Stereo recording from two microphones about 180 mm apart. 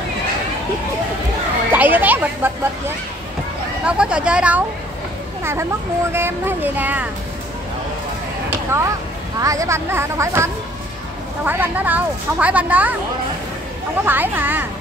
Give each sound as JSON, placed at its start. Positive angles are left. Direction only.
{"t": 1.7, "sound": "speech", "side_deg": -10}
{"t": 3.8, "sound": "speech", "side_deg": -5}
{"t": 8.7, "sound": "speech", "side_deg": -15}
{"t": 14.0, "sound": "speech", "side_deg": -10}